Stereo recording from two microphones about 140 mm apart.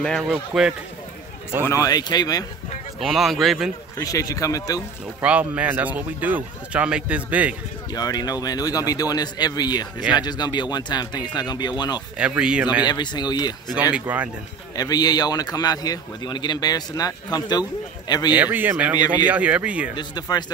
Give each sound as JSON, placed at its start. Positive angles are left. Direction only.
{"t": 0.3, "sound": "a man's voice", "side_deg": -5}
{"t": 1.7, "sound": "a man's voice", "side_deg": 25}
{"t": 3.0, "sound": "a man's voice", "side_deg": 0}
{"t": 4.0, "sound": "a man's voice", "side_deg": 25}
{"t": 5.2, "sound": "speech", "side_deg": -10}
{"t": 7.9, "sound": "a man's voice", "side_deg": 30}
{"t": 12.2, "sound": "speech", "side_deg": -5}
{"t": 12.8, "sound": "a man's voice", "side_deg": 30}
{"t": 13.9, "sound": "speech", "side_deg": -10}
{"t": 14.8, "sound": "a man's voice", "side_deg": 30}
{"t": 18.3, "sound": "speech", "side_deg": -10}
{"t": 20.0, "sound": "a man's voice", "side_deg": 30}